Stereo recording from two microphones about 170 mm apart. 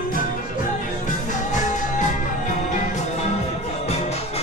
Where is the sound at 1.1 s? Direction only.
45° left (ahead or behind).